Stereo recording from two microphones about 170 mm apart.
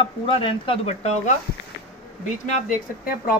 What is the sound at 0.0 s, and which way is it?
Speech, 30° left (ahead or behind).